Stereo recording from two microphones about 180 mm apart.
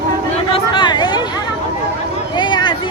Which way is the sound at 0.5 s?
25° left (ahead or behind).